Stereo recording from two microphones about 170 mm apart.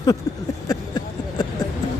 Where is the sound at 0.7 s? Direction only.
25° left (ahead or behind).